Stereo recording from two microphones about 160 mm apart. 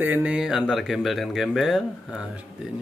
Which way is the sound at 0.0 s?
10° right (ahead or behind).